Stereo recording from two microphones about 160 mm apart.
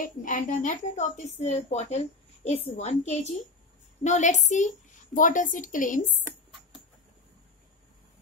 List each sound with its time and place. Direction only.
0.0 s a woman's voice: 55° left (ahead or behind)